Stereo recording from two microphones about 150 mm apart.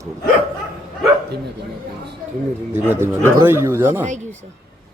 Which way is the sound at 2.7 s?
15° right (ahead or behind).